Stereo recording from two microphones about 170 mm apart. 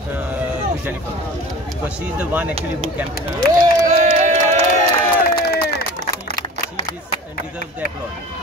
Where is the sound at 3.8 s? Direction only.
45° right (ahead or behind).